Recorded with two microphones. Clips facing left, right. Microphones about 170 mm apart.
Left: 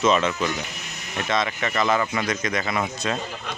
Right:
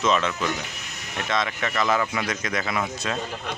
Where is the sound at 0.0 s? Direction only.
Centre (ahead or behind).